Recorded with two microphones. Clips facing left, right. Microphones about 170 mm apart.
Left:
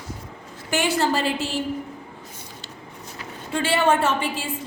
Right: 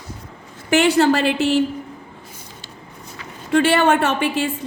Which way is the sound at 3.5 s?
70° right (ahead or behind).